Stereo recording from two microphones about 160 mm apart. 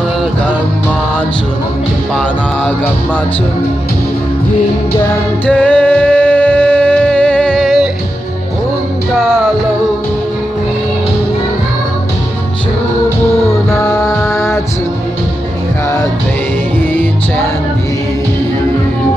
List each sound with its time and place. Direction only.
5.5 s music: 10° left (ahead or behind)
13.7 s music: 20° left (ahead or behind)